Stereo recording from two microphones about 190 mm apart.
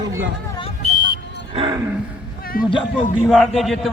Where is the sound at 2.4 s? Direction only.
50° left (ahead or behind).